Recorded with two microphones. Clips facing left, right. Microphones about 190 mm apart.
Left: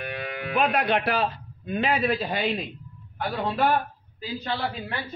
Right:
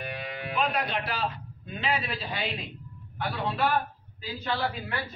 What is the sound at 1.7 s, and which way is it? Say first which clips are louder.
Speech: left 7 dB; 50° left (ahead or behind).